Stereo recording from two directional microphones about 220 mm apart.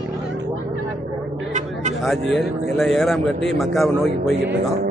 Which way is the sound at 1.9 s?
Centre (ahead or behind).